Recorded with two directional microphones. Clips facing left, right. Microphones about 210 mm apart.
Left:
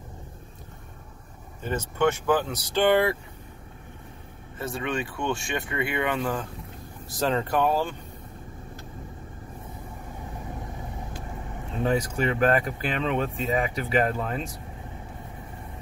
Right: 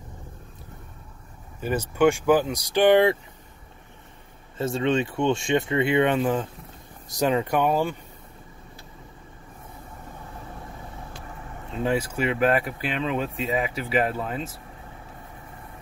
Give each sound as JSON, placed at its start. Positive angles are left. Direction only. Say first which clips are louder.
{"t": 1.6, "sound": "speech", "louder": "right 4 dB", "side_deg": -10}
{"t": 4.6, "sound": "speech", "louder": "right 6 dB", "side_deg": -25}
{"t": 11.8, "sound": "speech", "louder": "even", "side_deg": -5}